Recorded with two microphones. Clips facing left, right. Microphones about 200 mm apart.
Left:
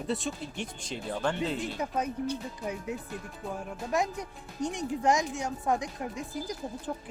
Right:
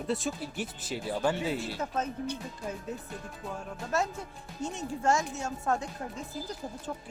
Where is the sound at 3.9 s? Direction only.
15° left (ahead or behind).